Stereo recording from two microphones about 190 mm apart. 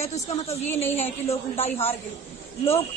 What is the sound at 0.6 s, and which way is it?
Speech, 10° left (ahead or behind).